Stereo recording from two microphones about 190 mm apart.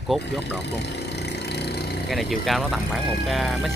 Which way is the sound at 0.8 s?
60° left (ahead or behind).